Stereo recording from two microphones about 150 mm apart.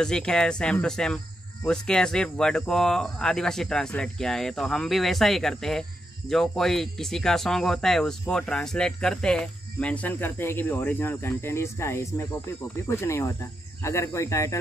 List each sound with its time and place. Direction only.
0.0 s speech: 5° left (ahead or behind); by 14.6 s 20° left (ahead or behind)